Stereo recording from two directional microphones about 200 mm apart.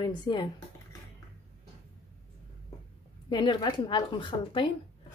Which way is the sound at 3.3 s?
20° left (ahead or behind).